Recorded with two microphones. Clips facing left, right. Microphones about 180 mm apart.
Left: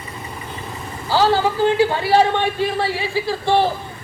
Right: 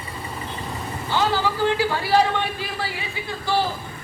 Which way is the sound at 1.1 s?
35° left (ahead or behind).